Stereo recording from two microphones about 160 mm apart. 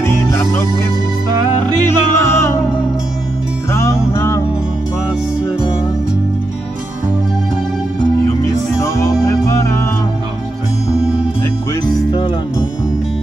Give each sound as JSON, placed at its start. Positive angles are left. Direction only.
{"t": 0.0, "sound": "music", "side_deg": 15}
{"t": 1.9, "sound": "music", "side_deg": 15}
{"t": 3.7, "sound": "music", "side_deg": 20}
{"t": 8.8, "sound": "music", "side_deg": 20}
{"t": 12.1, "sound": "music", "side_deg": 30}